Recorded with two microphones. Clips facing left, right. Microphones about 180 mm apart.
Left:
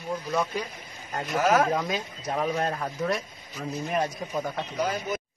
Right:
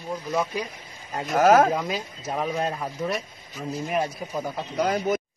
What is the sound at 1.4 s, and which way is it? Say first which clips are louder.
Speech: right 6 dB; 50° right (ahead or behind).